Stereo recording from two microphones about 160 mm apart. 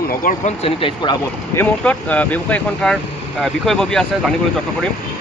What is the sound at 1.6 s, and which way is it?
Speech, 10° left (ahead or behind).